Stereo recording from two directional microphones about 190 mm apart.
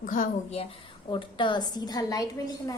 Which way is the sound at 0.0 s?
45° left (ahead or behind).